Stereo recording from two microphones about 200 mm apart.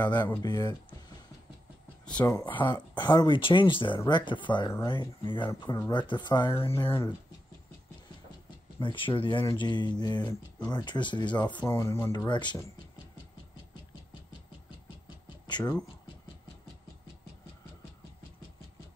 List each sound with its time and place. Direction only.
0.0 s speech: 20° left (ahead or behind)
2.1 s speech: 15° left (ahead or behind)
8.7 s speech: 25° left (ahead or behind)
15.2 s a sound: 20° left (ahead or behind)